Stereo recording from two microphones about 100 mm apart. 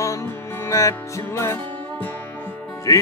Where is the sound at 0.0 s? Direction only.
30° left (ahead or behind).